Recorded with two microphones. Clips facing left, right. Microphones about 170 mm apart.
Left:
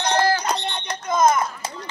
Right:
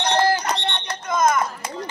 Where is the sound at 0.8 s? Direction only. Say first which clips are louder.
Left 3 dB; 20° left (ahead or behind).